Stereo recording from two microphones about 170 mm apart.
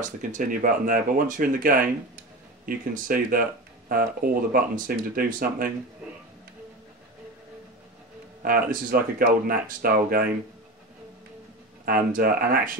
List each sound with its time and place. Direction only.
0.0 s speech: 50° right (ahead or behind)
8.4 s speech: 55° right (ahead or behind)
11.8 s speech: 60° right (ahead or behind)